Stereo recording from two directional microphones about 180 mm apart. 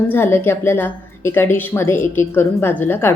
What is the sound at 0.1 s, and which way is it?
A woman's voice, 15° left (ahead or behind).